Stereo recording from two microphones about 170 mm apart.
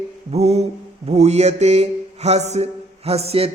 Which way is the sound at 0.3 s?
40° right (ahead or behind).